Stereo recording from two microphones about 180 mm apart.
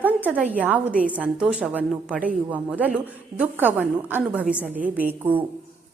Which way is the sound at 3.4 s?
10° right (ahead or behind).